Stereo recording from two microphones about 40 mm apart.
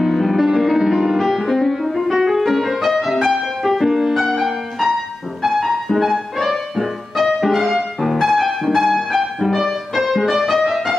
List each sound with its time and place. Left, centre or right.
0.1 s music: centre